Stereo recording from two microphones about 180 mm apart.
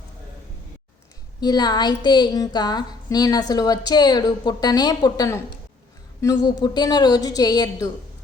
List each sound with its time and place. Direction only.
1.4 s a woman's voice: 25° left (ahead or behind)